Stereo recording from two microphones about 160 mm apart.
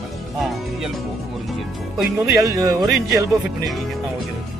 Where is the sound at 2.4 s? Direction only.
20° right (ahead or behind).